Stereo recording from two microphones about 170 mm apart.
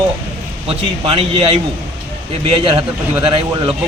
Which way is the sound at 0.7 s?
35° right (ahead or behind).